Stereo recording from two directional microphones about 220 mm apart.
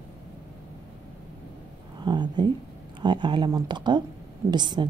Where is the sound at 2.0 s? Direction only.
20° right (ahead or behind).